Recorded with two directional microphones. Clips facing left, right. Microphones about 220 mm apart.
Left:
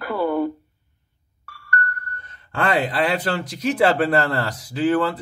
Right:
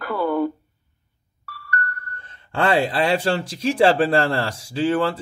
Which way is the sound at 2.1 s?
30° right (ahead or behind).